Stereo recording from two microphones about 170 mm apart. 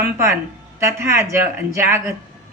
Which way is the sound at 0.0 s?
15° right (ahead or behind).